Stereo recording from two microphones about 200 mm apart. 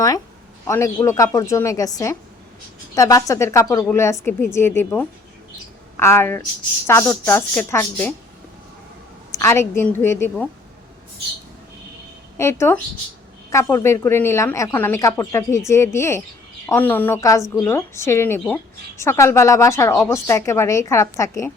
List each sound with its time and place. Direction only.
0.7 s a woman's voice: 15° left (ahead or behind)
9.3 s a woman's voice: 15° left (ahead or behind)
12.4 s a woman's voice: 15° left (ahead or behind)